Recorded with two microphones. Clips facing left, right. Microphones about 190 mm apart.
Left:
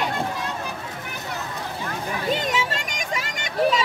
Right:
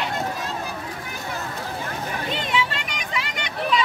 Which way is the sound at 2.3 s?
45° left (ahead or behind).